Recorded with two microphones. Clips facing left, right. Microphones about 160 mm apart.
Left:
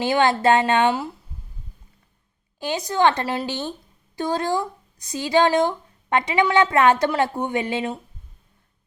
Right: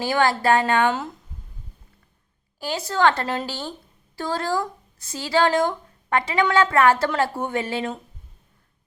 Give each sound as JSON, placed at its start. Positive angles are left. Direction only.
{"t": 0.0, "sound": "a woman's voice", "side_deg": 20}
{"t": 2.6, "sound": "a woman's voice", "side_deg": 20}